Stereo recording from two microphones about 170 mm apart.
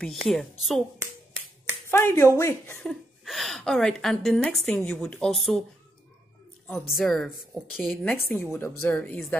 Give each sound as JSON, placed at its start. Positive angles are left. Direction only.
{"t": 0.0, "sound": "a woman's voice", "side_deg": 0}
{"t": 1.9, "sound": "a woman's voice", "side_deg": 15}
{"t": 2.9, "sound": "a woman's voice", "side_deg": 0}
{"t": 6.9, "sound": "a woman's voice", "side_deg": 0}
{"t": 8.0, "sound": "a woman's voice", "side_deg": 10}